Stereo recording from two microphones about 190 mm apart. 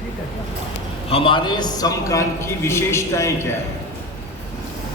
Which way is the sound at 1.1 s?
30° left (ahead or behind).